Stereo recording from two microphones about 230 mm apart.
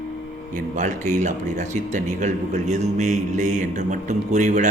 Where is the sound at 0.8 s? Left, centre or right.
Right.